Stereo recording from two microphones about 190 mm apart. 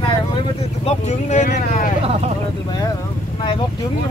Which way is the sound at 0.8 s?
35° left (ahead or behind).